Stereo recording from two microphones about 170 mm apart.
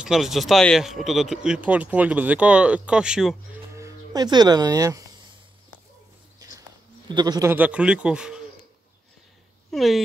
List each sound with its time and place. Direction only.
0.0 s speech: centre (ahead or behind)
3.7 s speech: 20° right (ahead or behind)
7.1 s speech: 25° right (ahead or behind)
7.5 s speech: 10° right (ahead or behind)
9.7 s speech: centre (ahead or behind)